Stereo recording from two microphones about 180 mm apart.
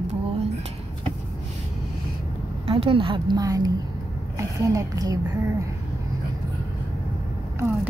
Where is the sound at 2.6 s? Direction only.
30° right (ahead or behind).